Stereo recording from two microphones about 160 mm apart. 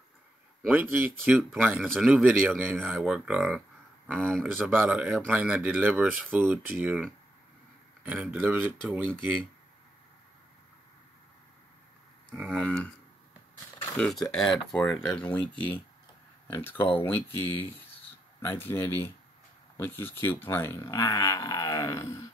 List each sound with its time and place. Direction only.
0.7 s speech: 10° right (ahead or behind)
4.6 s speech: 10° right (ahead or behind)
8.0 s speech: 10° right (ahead or behind)
12.5 s speech: 5° left (ahead or behind)
13.9 s speech: 5° left (ahead or behind)